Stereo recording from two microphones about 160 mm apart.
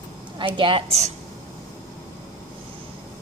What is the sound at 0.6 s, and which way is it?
Speech, 35° right (ahead or behind).